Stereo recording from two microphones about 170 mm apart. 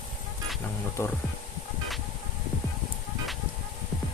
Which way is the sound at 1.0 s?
15° left (ahead or behind).